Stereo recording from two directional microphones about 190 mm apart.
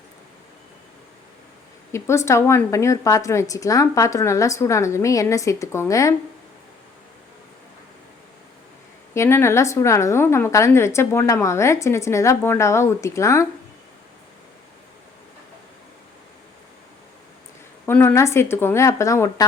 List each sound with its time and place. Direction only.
1.9 s a woman's voice: 15° left (ahead or behind)
9.1 s a woman's voice: 15° left (ahead or behind)
17.8 s a woman's voice: 10° left (ahead or behind)